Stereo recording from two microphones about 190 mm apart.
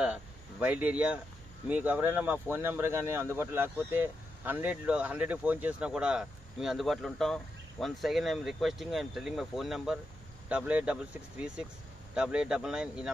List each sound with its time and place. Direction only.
0.0 s speech: 5° right (ahead or behind)